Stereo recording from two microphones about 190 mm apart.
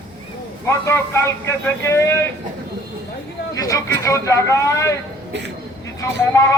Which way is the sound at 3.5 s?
15° left (ahead or behind).